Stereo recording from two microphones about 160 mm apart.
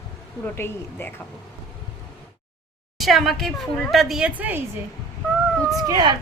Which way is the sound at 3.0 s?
Centre (ahead or behind).